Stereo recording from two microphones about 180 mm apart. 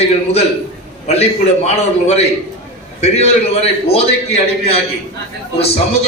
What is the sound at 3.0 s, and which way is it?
A man's voice, 35° left (ahead or behind).